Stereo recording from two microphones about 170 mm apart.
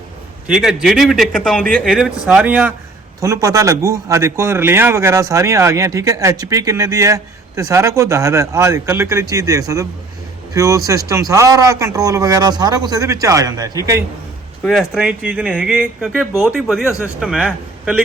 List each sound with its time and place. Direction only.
0.4 s a man's voice: centre (ahead or behind); by 14.0 s 20° right (ahead or behind)
14.6 s a man's voice: centre (ahead or behind)